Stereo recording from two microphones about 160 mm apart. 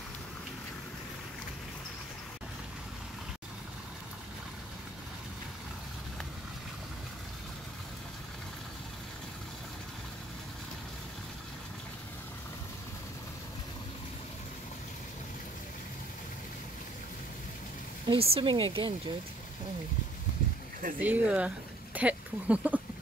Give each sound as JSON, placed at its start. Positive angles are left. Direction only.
{"t": 18.0, "sound": "speech", "side_deg": -35}
{"t": 21.0, "sound": "speech", "side_deg": -10}